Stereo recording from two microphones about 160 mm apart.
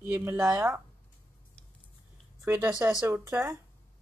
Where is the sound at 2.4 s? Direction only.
15° right (ahead or behind).